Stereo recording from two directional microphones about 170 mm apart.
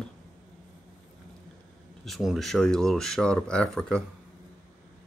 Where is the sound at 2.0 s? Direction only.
Centre (ahead or behind).